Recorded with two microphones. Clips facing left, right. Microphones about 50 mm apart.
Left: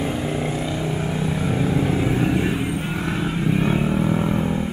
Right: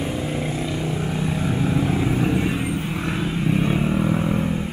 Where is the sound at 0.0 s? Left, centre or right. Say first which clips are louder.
Left 2 dB; centre.